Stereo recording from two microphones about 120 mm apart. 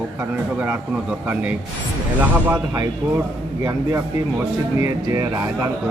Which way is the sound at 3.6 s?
25° right (ahead or behind).